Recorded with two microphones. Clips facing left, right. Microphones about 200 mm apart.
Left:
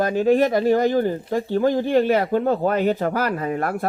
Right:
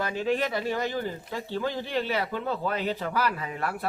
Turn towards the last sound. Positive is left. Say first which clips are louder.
# left 9 dB
turn(degrees=45)  # may be behind; listen again after turning